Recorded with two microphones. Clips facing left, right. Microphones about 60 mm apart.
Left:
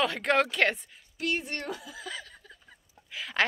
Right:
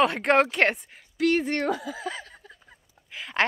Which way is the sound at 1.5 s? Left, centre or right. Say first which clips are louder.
Right 10 dB; right.